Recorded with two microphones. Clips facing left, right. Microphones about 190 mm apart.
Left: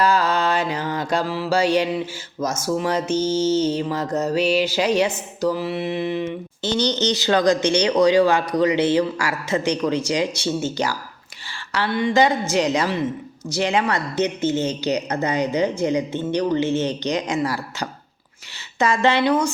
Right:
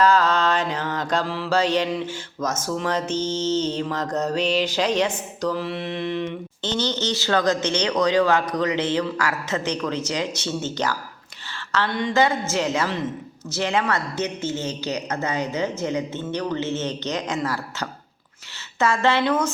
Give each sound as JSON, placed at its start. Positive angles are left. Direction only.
{"t": 0.0, "sound": "mantra", "side_deg": 10}
{"t": 2.4, "sound": "speech", "side_deg": 10}